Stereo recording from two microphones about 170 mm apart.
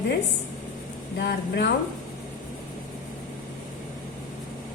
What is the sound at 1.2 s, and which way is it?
Speech, 85° left.